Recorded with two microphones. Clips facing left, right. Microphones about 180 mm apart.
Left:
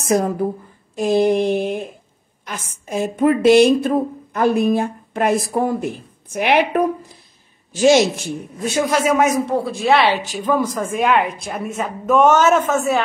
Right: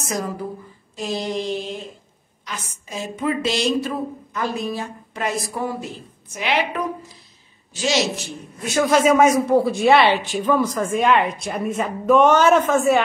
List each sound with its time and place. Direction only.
0.0 s speech: 55° left (ahead or behind)
8.9 s speech: 5° left (ahead or behind)